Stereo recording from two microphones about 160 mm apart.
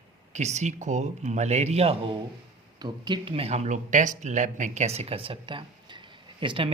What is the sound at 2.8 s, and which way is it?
Speech, 30° right (ahead or behind).